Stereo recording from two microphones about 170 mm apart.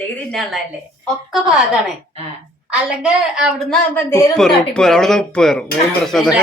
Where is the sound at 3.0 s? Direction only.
5° right (ahead or behind).